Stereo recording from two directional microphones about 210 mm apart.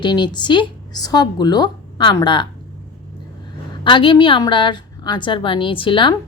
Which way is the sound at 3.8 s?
25° left (ahead or behind).